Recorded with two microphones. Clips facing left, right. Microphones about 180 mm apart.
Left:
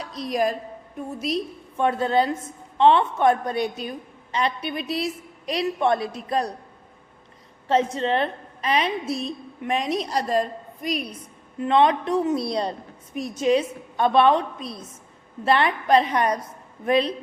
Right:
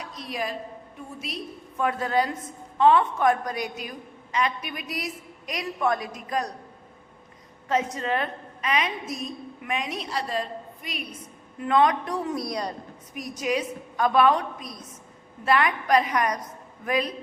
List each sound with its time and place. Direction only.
0.0 s a woman's voice: 35° left (ahead or behind)
1.8 s a woman's voice: 25° left (ahead or behind)
7.7 s a woman's voice: 30° left (ahead or behind)
11.6 s a woman's voice: 25° left (ahead or behind)